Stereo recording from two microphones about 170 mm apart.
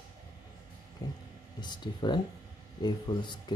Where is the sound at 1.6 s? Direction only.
25° left (ahead or behind).